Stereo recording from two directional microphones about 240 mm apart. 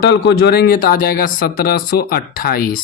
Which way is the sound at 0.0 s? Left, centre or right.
Left.